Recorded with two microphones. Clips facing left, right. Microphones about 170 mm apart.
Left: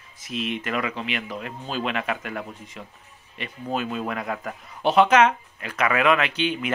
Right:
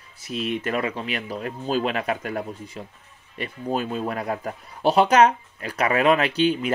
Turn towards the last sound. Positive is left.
turn(degrees=-40)  # may be behind; listen again after turning